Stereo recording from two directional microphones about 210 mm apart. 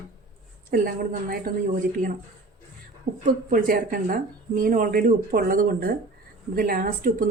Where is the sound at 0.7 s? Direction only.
45° right (ahead or behind).